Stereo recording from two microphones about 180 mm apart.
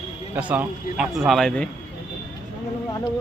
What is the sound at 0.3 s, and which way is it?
A man's voice, 10° right (ahead or behind).